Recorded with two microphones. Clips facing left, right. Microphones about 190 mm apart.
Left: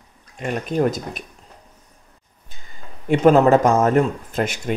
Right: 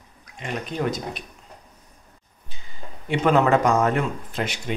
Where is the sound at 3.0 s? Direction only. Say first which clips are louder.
Left 6 dB; 45° left (ahead or behind).